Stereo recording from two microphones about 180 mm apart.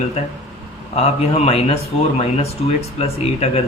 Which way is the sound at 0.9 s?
35° left (ahead or behind).